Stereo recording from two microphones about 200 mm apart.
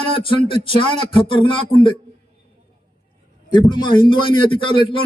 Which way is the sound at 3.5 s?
20° left (ahead or behind).